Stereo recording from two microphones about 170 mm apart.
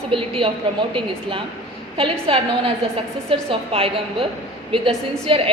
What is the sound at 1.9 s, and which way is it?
Speech, 30° right (ahead or behind).